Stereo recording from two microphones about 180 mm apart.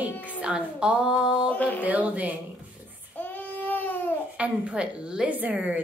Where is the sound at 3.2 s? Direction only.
10° left (ahead or behind).